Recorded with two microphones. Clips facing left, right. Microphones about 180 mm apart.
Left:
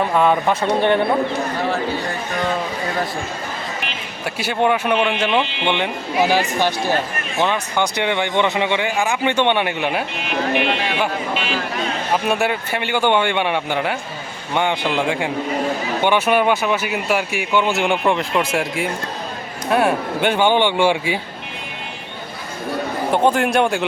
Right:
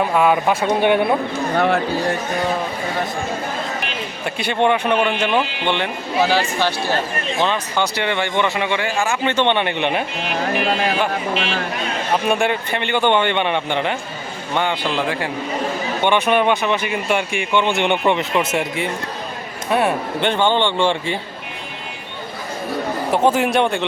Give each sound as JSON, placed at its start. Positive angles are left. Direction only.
{"t": 0.1, "sound": "speech", "side_deg": -5}
{"t": 1.5, "sound": "speech", "side_deg": -60}
{"t": 4.4, "sound": "speech", "side_deg": 5}
{"t": 10.6, "sound": "speech", "side_deg": -40}
{"t": 12.3, "sound": "speech", "side_deg": 5}
{"t": 14.5, "sound": "speech", "side_deg": 20}
{"t": 23.1, "sound": "speech", "side_deg": 0}